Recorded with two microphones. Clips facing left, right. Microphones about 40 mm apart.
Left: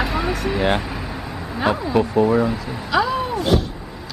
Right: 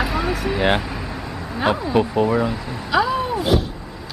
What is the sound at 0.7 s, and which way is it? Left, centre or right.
Vehicle, centre.